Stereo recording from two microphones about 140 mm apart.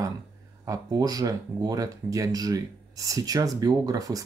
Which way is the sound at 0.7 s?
25° right (ahead or behind).